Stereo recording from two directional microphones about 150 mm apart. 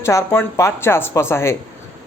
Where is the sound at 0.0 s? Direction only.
20° left (ahead or behind).